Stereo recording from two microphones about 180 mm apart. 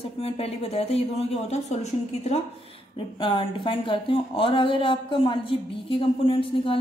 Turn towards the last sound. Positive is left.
turn(degrees=30)  # may be behind; listen again after turning